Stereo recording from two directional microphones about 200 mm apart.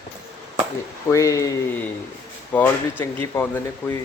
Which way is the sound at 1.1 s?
15° left (ahead or behind).